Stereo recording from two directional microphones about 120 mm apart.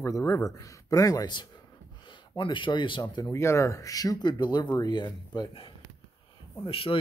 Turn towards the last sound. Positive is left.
turn(degrees=50)  # may be behind; listen again after turning